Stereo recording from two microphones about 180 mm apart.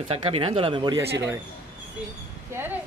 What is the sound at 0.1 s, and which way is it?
Speech, 30° right (ahead or behind).